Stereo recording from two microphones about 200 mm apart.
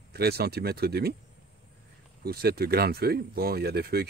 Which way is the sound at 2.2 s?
50° right (ahead or behind).